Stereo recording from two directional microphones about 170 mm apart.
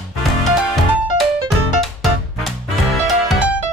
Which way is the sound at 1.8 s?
Centre (ahead or behind).